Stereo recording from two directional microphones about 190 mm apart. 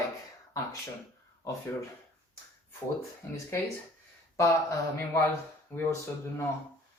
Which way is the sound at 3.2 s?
15° left (ahead or behind).